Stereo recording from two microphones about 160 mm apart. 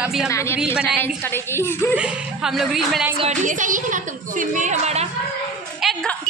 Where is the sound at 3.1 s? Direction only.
45° right (ahead or behind).